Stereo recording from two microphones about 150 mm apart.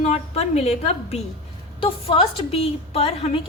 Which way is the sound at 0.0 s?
45° left (ahead or behind).